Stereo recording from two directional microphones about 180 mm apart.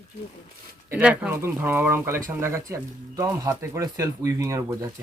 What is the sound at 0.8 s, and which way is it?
Speech, 10° right (ahead or behind).